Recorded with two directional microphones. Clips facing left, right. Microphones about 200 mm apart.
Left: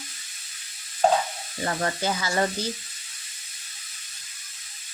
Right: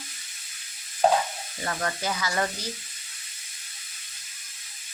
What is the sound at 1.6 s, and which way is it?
Speech, 30° left (ahead or behind).